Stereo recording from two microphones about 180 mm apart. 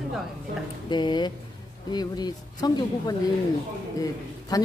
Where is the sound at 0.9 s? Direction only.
25° left (ahead or behind).